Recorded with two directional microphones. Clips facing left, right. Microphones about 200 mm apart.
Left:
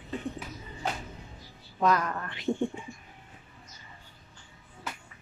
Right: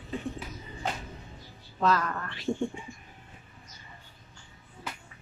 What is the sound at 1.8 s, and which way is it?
Speech, 20° left (ahead or behind).